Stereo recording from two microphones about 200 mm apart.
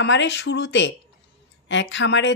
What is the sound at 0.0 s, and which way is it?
Speech, 65° left (ahead or behind).